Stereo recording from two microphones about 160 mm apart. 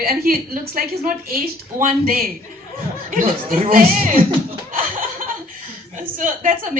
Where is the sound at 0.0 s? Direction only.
65° right (ahead or behind).